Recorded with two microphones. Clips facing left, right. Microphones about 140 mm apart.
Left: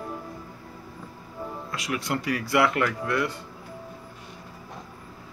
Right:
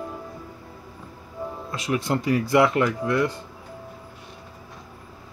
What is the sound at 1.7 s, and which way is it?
Speech, 25° right (ahead or behind).